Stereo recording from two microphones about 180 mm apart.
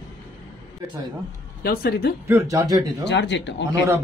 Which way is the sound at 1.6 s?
60° left (ahead or behind).